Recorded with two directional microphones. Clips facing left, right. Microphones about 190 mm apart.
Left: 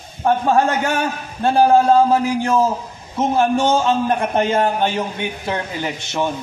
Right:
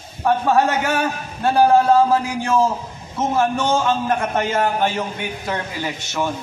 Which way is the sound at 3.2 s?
20° left (ahead or behind).